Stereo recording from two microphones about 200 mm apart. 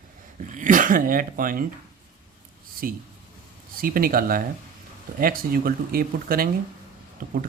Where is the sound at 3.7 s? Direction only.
45° right (ahead or behind).